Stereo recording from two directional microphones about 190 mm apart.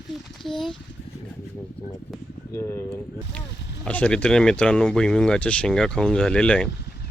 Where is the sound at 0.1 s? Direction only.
Centre (ahead or behind).